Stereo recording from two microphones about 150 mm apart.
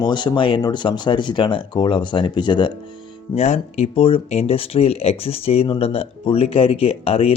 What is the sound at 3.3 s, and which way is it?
Speech, 45° left (ahead or behind).